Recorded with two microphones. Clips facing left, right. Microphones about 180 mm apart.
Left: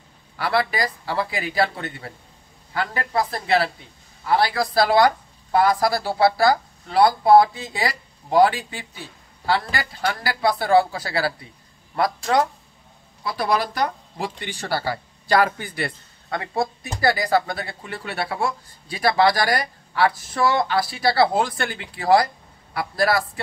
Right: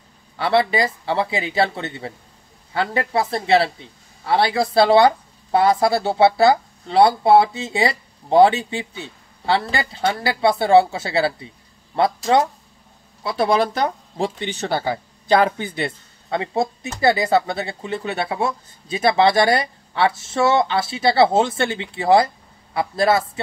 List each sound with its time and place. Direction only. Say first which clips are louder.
0.4 s speech: right 4 dB; 25° right (ahead or behind)
13.2 s speech: right 4 dB; 25° right (ahead or behind)